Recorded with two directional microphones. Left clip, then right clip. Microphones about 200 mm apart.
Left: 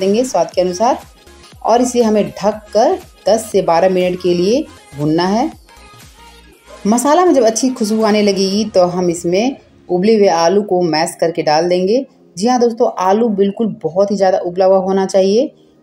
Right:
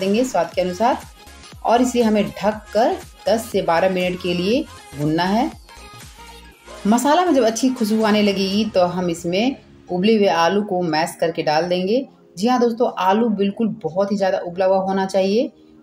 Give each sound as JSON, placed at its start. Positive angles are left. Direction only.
{"t": 0.3, "sound": "a woman's voice", "side_deg": 15}
{"t": 6.9, "sound": "a woman's voice", "side_deg": 10}